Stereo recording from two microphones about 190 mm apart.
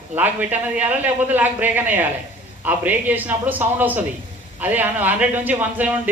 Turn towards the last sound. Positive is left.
turn(degrees=-10)  # may be behind; listen again after turning